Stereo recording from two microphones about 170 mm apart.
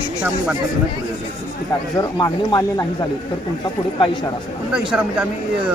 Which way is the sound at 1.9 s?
20° left (ahead or behind).